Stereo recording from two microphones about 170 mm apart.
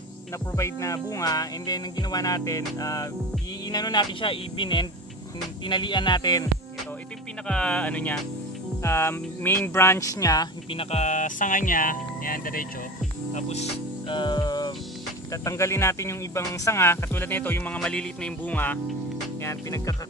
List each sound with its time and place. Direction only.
0.5 s speech: 15° left (ahead or behind)
7.4 s speech: 5° left (ahead or behind); by 12.6 s 55° left (ahead or behind)
13.3 s speech: 40° left (ahead or behind); by 20.0 s 20° left (ahead or behind)